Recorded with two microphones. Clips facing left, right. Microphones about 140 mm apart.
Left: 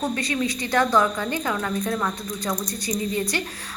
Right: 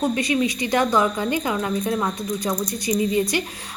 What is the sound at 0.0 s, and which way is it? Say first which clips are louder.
A woman's voice: right 4 dB; 15° right (ahead or behind).